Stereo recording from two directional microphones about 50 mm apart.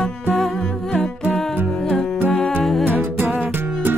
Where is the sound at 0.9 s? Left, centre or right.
Centre.